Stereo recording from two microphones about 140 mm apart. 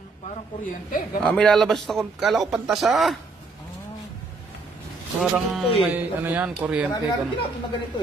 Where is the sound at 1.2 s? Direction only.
5° left (ahead or behind).